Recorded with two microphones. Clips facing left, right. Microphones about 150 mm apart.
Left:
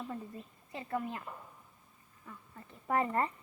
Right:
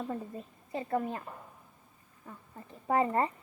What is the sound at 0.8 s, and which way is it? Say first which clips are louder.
Speech: right 5 dB; 40° right (ahead or behind).